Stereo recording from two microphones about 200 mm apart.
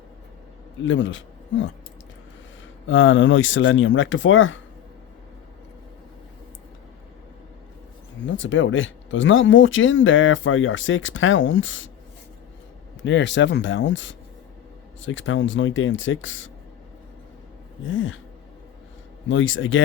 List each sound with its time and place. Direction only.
0.9 s speech: 70° left (ahead or behind)
2.8 s speech: 75° left (ahead or behind)
8.3 s speech: 70° left (ahead or behind)
13.0 s speech: 65° left (ahead or behind)
17.8 s speech: 70° left (ahead or behind)
19.3 s speech: 75° left (ahead or behind)